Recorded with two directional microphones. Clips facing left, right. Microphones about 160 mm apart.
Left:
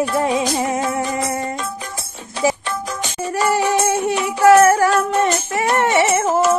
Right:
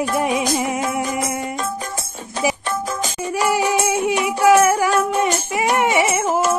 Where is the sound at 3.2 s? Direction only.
10° right (ahead or behind).